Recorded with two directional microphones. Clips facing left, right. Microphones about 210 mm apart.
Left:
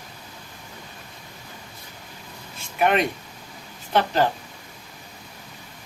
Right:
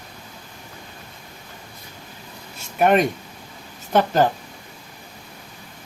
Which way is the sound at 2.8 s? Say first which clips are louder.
Right 4 dB; 45° right (ahead or behind).